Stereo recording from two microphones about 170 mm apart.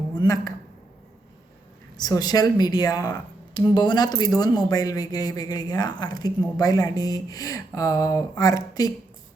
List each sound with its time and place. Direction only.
0.1 s speech: 20° left (ahead or behind)
2.0 s speech: 20° left (ahead or behind)